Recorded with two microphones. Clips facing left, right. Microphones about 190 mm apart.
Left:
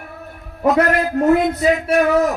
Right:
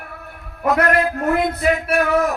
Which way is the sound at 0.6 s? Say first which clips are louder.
Left 2 dB; 25° left (ahead or behind).